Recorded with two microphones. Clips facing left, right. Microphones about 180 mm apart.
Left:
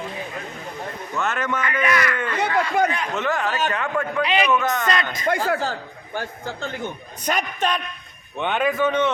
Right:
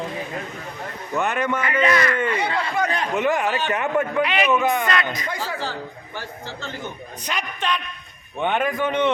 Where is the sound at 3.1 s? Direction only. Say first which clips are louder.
Right 3 dB; 15° right (ahead or behind).